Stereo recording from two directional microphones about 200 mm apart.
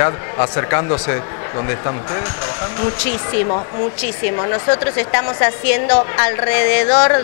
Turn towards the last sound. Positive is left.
turn(degrees=20)  # may be behind; listen again after turning